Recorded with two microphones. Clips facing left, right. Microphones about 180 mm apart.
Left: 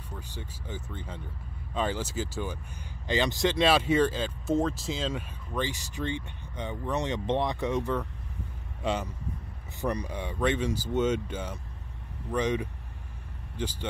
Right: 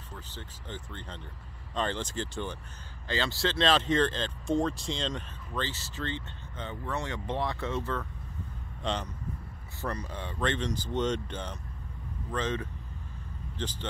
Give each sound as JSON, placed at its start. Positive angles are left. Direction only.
{"t": 0.1, "sound": "speech", "side_deg": 10}